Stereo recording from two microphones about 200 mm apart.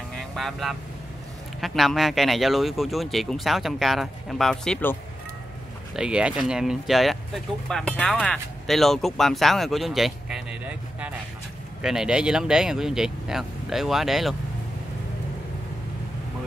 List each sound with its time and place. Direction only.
0.4 s speech: centre (ahead or behind)
5.9 s speech: 5° right (ahead or behind)